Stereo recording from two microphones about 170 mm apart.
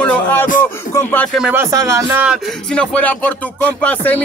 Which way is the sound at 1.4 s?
10° right (ahead or behind).